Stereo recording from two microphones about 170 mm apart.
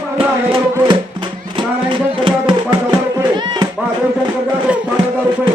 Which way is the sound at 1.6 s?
30° right (ahead or behind).